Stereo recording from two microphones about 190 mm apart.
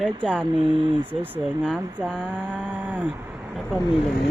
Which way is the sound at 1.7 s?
10° right (ahead or behind).